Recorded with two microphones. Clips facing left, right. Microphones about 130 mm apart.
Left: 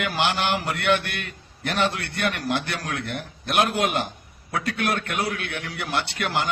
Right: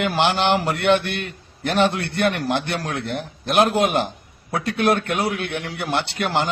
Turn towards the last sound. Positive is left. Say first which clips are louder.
# right 4 dB
turn(degrees=-25)  # may be behind; listen again after turning